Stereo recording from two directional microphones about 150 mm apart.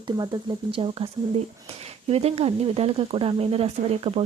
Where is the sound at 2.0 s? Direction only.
40° right (ahead or behind).